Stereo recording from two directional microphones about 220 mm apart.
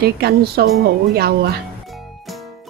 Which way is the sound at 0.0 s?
45° right (ahead or behind).